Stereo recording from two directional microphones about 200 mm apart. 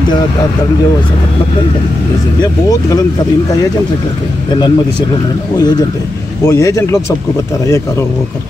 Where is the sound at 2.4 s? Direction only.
20° left (ahead or behind).